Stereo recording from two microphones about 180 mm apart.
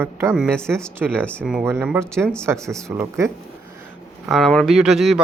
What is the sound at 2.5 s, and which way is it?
Speech, 15° right (ahead or behind).